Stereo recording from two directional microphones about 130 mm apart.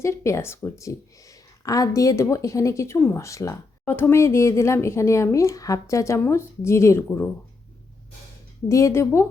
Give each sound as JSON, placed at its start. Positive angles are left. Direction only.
{"t": 0.0, "sound": "speech", "side_deg": 20}
{"t": 8.7, "sound": "speech", "side_deg": 20}